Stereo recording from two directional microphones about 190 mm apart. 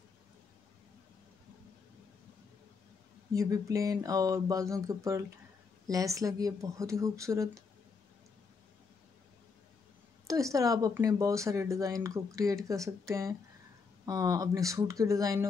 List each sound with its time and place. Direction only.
3.3 s speech: 15° right (ahead or behind)
10.2 s speech: 15° right (ahead or behind)